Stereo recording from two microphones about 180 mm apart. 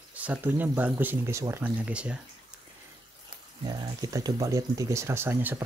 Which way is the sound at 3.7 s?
20° right (ahead or behind).